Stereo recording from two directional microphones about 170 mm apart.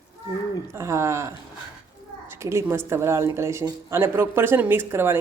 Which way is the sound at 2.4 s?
15° right (ahead or behind).